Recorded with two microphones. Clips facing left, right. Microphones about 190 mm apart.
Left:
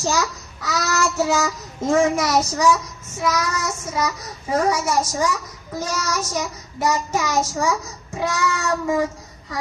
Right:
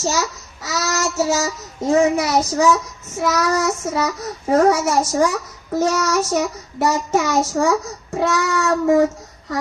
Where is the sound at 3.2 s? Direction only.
55° right (ahead or behind).